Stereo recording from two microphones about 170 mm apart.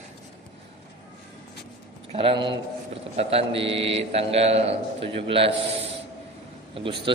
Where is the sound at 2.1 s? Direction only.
30° right (ahead or behind).